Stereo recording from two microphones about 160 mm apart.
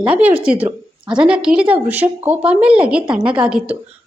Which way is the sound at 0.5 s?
40° right (ahead or behind).